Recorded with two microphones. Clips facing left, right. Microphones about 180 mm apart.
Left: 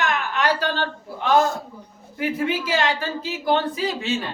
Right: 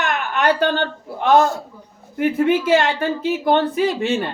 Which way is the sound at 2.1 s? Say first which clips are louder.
Right 7 dB; 55° right (ahead or behind).